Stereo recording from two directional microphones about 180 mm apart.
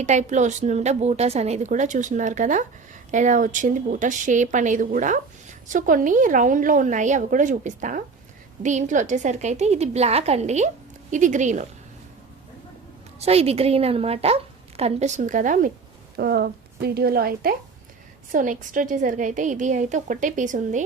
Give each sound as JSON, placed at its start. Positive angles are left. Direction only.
{"t": 0.0, "sound": "a woman's voice", "side_deg": -40}
{"t": 13.1, "sound": "a woman's voice", "side_deg": -35}
{"t": 16.1, "sound": "a woman's voice", "side_deg": -60}